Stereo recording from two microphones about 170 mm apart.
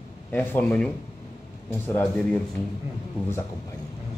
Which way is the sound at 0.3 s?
10° left (ahead or behind).